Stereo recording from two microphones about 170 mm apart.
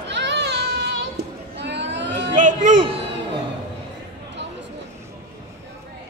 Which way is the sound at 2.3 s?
50° right (ahead or behind).